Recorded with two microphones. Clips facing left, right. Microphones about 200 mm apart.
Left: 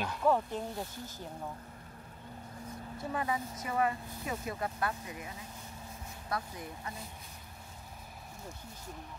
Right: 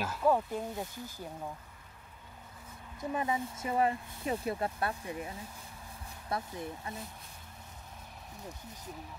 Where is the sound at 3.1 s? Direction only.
25° right (ahead or behind).